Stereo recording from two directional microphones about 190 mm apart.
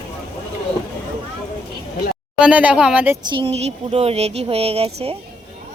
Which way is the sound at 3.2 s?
30° right (ahead or behind).